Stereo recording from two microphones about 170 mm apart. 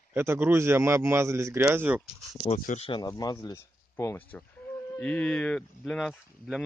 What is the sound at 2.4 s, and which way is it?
Speech, 45° left (ahead or behind).